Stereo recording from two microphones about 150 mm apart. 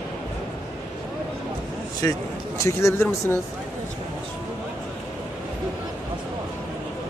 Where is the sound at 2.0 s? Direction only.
20° left (ahead or behind).